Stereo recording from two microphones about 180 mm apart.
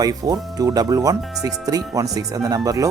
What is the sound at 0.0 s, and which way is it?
Speech, 20° right (ahead or behind).